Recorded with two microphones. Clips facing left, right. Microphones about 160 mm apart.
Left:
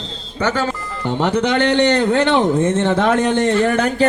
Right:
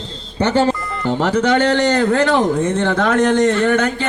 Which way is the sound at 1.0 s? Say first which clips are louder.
Right 1 dB; 15° left (ahead or behind).